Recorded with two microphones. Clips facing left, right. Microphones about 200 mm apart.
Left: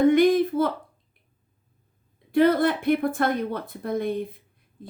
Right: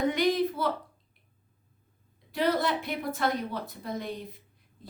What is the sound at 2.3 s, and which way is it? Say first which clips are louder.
Speech: left 8 dB; 55° left (ahead or behind).